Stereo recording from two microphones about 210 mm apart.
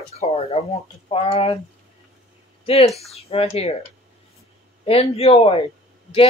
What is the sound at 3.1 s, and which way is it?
Speech, 30° left (ahead or behind).